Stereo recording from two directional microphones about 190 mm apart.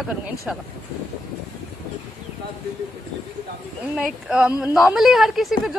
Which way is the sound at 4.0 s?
5° right (ahead or behind).